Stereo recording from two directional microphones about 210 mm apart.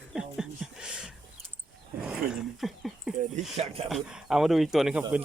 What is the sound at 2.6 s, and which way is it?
Speech, centre (ahead or behind).